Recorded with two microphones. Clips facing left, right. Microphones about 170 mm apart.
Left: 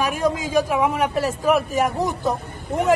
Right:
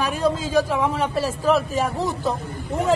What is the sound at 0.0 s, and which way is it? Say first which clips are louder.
A man's voice: even; 10° left (ahead or behind).